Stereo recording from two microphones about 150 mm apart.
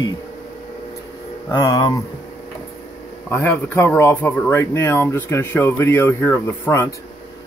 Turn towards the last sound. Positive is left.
turn(degrees=20)  # may be behind; listen again after turning